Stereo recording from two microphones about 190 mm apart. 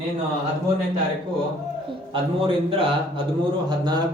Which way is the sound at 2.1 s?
30° right (ahead or behind).